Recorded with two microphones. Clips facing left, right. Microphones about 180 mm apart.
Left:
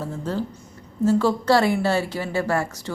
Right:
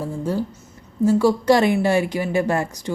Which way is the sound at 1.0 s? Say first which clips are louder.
Right 3 dB; 10° right (ahead or behind).